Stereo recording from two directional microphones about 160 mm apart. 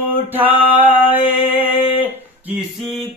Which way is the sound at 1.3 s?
10° right (ahead or behind).